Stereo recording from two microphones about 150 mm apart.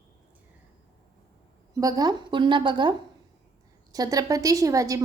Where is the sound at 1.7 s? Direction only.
25° right (ahead or behind).